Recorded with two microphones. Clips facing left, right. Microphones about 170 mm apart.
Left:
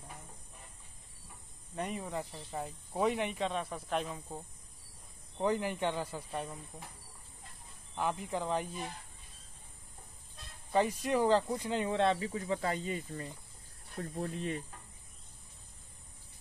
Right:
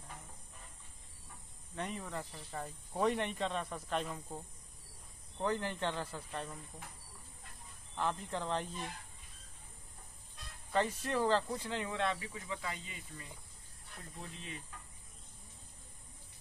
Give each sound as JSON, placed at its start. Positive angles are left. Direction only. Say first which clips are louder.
{"t": 1.8, "sound": "speech", "louder": "left 4 dB", "side_deg": 15}
{"t": 7.9, "sound": "speech", "louder": "left 3 dB", "side_deg": 10}
{"t": 10.7, "sound": "speech", "louder": "left 4 dB", "side_deg": 15}
{"t": 11.9, "sound": "speech", "louder": "left 9 dB", "side_deg": 30}